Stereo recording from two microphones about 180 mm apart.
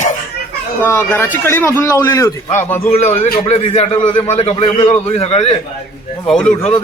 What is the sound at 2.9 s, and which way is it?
A man's voice, 35° left (ahead or behind).